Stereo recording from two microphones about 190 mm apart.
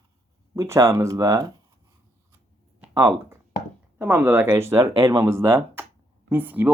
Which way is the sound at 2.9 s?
15° right (ahead or behind).